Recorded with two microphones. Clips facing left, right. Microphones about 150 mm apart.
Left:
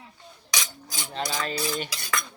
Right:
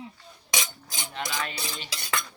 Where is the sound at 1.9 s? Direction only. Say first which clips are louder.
Left 1 dB; 30° right (ahead or behind).